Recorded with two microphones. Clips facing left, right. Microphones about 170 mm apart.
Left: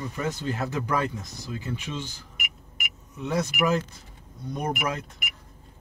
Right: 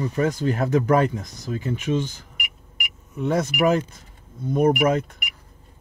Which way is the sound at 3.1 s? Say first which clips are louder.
Right 5 dB; 55° right (ahead or behind).